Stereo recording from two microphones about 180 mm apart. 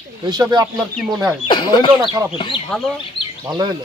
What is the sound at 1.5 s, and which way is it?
Speech, 25° left (ahead or behind).